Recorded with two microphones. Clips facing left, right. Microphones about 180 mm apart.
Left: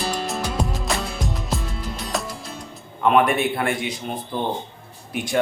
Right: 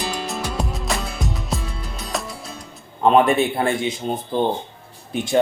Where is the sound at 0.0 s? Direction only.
Centre (ahead or behind).